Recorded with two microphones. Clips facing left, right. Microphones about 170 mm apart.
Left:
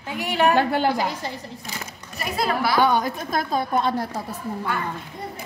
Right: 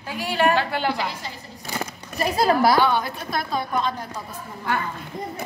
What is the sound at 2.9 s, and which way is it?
A woman's voice, 45° left (ahead or behind).